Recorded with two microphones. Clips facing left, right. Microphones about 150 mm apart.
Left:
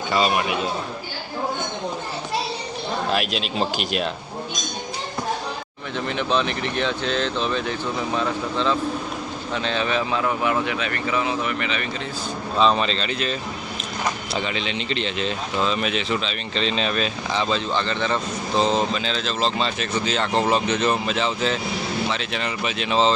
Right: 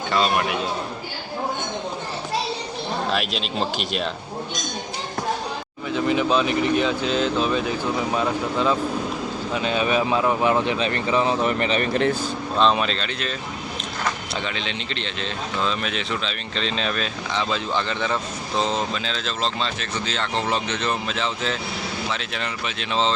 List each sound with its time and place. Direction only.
0.1 s speech: 5° left (ahead or behind)
3.1 s speech: 5° left (ahead or behind)
5.9 s speech: 5° right (ahead or behind); by 11.9 s 35° right (ahead or behind)
12.5 s speech: centre (ahead or behind)
14.3 s speech: 5° left (ahead or behind)
17.7 s speech: 10° right (ahead or behind); by 23.1 s 5° left (ahead or behind)